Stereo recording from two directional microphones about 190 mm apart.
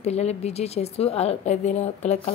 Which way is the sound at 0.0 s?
35° left (ahead or behind).